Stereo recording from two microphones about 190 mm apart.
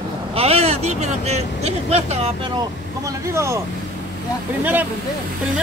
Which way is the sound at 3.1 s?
15° right (ahead or behind).